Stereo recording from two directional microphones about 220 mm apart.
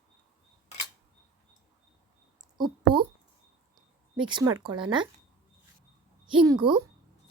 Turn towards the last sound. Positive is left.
turn(degrees=-20)  # may be behind; listen again after turning